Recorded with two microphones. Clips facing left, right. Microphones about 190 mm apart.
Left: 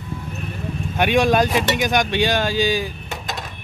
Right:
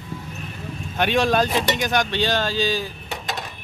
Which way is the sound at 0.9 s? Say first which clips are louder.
Left 3 dB; 10° left (ahead or behind).